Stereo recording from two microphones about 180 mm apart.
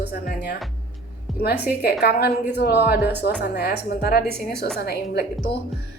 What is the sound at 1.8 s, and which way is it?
A woman's voice, 60° left (ahead or behind).